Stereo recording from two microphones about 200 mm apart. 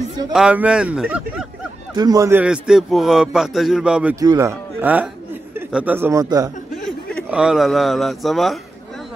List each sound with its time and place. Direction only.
0.3 s a man's voice: 5° right (ahead or behind)
2.0 s a man's voice: 15° right (ahead or behind)
4.2 s speech: 15° right (ahead or behind)
7.2 s a man's voice: 5° right (ahead or behind)